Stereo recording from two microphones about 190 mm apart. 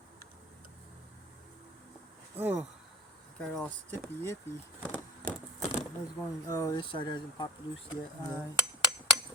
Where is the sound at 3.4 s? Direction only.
5° left (ahead or behind).